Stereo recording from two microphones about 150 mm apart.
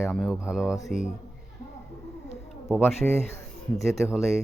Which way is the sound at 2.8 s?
15° left (ahead or behind).